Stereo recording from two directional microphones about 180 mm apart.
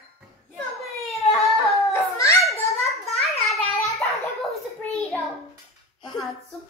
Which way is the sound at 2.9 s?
Centre (ahead or behind).